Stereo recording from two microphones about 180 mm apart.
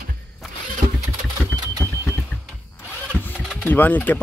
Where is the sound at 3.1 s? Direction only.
10° left (ahead or behind).